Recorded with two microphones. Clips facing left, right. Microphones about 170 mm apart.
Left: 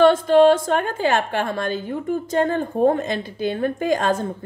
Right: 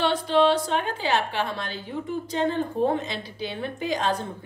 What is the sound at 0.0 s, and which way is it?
A woman's voice, 50° left (ahead or behind).